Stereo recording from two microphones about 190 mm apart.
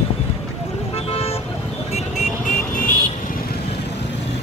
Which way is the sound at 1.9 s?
40° left (ahead or behind).